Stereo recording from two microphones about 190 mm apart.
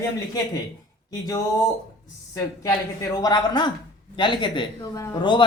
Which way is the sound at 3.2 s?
25° left (ahead or behind).